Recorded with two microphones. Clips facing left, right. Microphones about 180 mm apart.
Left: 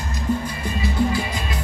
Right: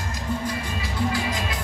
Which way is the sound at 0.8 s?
90° right.